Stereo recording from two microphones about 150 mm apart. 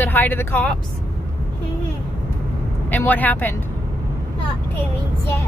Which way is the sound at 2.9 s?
10° left (ahead or behind).